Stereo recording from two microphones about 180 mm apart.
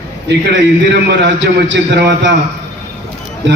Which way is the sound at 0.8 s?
75° right (ahead or behind).